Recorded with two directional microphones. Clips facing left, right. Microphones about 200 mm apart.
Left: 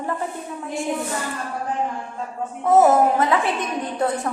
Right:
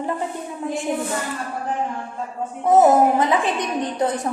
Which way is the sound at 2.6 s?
20° right (ahead or behind).